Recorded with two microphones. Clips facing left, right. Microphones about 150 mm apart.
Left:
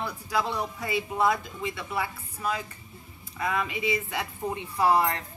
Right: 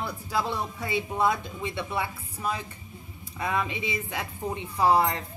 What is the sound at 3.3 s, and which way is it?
A woman's voice, 25° right (ahead or behind).